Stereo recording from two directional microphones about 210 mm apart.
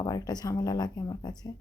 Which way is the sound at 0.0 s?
15° left (ahead or behind).